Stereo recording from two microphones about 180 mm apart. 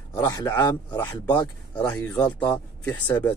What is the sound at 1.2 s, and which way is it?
Speech, 10° left (ahead or behind).